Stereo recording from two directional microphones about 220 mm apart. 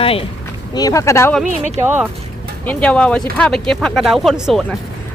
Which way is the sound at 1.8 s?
10° right (ahead or behind).